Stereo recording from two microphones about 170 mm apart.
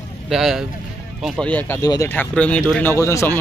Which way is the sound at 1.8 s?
20° left (ahead or behind).